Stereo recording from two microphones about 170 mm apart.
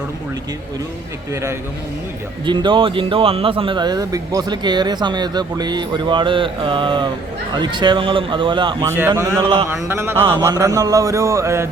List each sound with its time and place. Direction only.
1.3 s a man's voice: 15° right (ahead or behind)
2.5 s speech: 30° right (ahead or behind)
8.9 s a man's voice: 15° right (ahead or behind)